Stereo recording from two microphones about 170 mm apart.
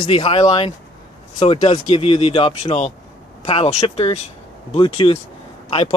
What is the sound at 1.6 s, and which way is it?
Speech, 35° left (ahead or behind).